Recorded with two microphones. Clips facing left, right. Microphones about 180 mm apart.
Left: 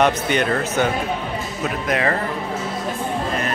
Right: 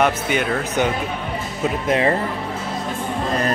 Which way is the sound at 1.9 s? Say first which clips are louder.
Right 3 dB; 25° right (ahead or behind).